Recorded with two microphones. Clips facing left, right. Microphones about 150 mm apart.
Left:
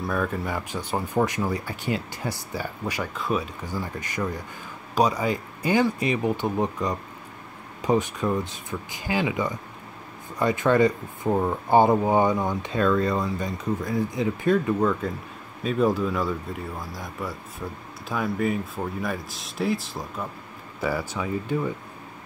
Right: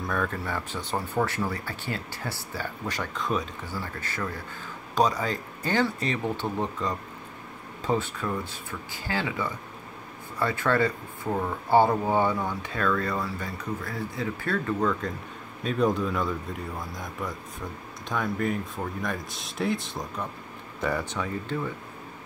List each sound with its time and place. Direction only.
0.0 s speech: 5° left (ahead or behind)